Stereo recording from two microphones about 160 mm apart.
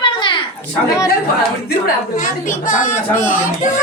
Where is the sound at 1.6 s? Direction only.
60° left (ahead or behind).